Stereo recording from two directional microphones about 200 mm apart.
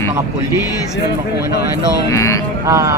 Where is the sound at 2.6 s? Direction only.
15° right (ahead or behind).